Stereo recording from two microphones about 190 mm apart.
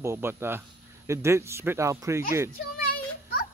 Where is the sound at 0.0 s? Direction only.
15° right (ahead or behind).